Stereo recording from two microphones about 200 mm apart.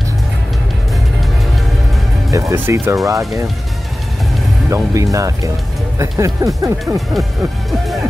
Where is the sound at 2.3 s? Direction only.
15° right (ahead or behind).